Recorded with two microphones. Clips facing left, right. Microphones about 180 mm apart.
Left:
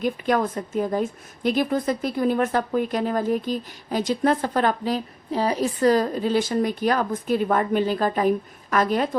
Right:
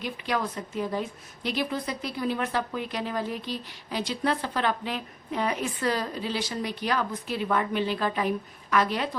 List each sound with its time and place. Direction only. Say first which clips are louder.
0.0 s a woman's voice: left 7 dB; 50° left (ahead or behind)